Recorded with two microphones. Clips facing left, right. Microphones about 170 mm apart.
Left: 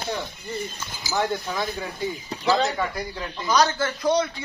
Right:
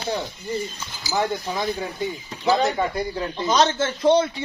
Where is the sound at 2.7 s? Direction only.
25° right (ahead or behind).